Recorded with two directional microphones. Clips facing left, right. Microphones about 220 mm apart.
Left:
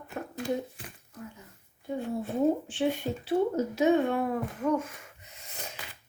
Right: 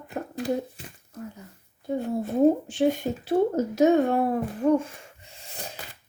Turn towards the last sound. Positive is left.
turn(degrees=-35)  # may be behind; listen again after turning